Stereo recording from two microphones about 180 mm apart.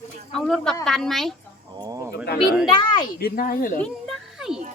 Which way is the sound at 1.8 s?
20° right (ahead or behind).